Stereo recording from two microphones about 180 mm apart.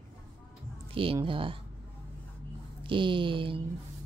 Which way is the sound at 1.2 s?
30° right (ahead or behind).